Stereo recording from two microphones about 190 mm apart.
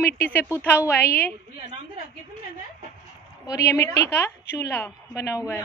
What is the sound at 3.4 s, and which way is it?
A woman's voice, 15° left (ahead or behind).